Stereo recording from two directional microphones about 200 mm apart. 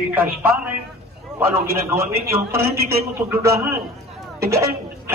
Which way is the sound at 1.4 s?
15° right (ahead or behind).